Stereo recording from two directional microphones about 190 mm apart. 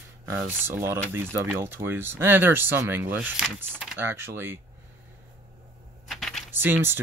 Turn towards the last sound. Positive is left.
turn(degrees=-10)  # may be behind; listen again after turning